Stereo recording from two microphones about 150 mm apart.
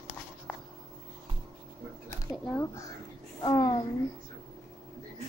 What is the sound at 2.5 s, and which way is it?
A child's voice, 20° left (ahead or behind).